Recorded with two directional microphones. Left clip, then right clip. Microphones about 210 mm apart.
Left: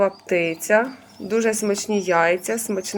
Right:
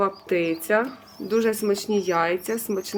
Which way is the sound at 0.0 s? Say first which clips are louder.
Left 3 dB; 5° right (ahead or behind).